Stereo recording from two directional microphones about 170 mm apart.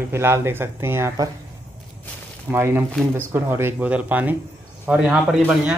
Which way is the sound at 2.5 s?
15° right (ahead or behind).